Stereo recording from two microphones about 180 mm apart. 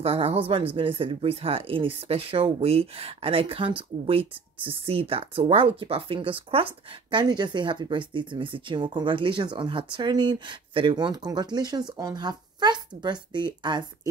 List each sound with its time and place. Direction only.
0.0 s speech: 35° right (ahead or behind)